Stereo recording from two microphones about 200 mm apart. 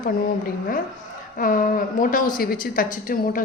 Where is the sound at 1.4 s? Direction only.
45° left (ahead or behind).